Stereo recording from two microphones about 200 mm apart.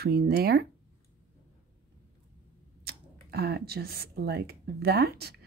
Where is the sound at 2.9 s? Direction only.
50° right (ahead or behind).